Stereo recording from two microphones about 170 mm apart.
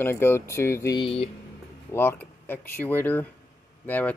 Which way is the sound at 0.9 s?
35° left (ahead or behind).